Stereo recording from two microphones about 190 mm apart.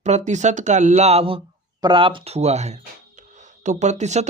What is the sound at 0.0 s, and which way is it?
Speech, 40° right (ahead or behind).